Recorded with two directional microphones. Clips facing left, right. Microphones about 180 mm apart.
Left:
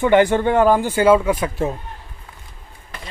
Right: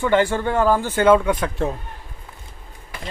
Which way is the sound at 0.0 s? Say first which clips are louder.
Left 4 dB; 15° left (ahead or behind).